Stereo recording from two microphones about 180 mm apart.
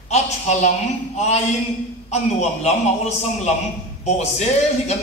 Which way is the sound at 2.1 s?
40° left (ahead or behind).